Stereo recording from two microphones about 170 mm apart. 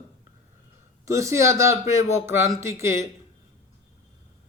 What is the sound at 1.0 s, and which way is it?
A man's voice, 15° right (ahead or behind).